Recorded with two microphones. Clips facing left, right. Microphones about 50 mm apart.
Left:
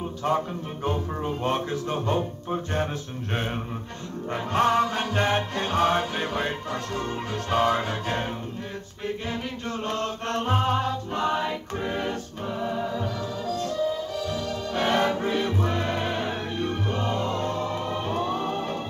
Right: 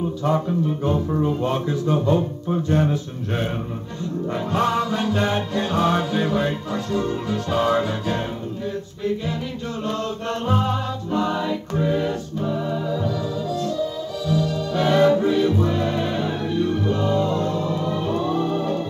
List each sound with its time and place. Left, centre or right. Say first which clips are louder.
0.2 s music: right 3 dB; left
9.8 s music: right 3 dB; left